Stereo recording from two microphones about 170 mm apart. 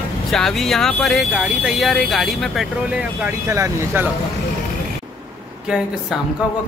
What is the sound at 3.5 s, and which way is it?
Speech, 15° right (ahead or behind).